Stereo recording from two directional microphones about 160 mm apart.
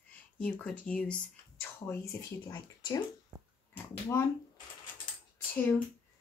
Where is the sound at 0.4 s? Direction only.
5° left (ahead or behind).